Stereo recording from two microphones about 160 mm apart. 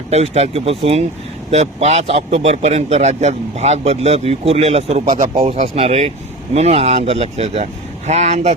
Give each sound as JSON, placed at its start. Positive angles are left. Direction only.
{"t": 0.1, "sound": "speech", "side_deg": -40}